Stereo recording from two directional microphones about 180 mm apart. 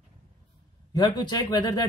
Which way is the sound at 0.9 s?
20° left (ahead or behind).